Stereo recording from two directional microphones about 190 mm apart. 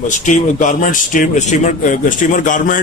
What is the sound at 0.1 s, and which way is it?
A man's voice, 40° left (ahead or behind).